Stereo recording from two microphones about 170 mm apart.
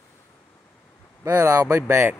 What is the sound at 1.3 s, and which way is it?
Speech, 15° right (ahead or behind).